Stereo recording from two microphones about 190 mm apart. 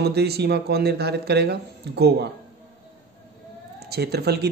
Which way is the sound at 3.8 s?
55° right (ahead or behind).